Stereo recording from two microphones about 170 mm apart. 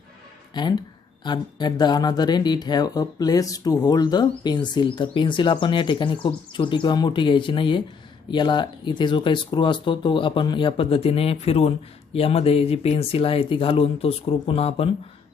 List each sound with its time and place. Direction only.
0.5 s speech: 25° left (ahead or behind)